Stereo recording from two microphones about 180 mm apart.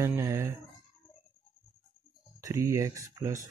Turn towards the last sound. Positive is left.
turn(degrees=-20)  # may be behind; listen again after turning